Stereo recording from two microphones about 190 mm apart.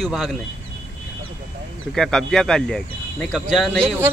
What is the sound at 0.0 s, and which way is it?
Speech, centre (ahead or behind).